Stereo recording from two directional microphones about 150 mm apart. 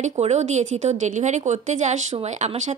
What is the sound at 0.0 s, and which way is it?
A woman's voice, 50° right (ahead or behind).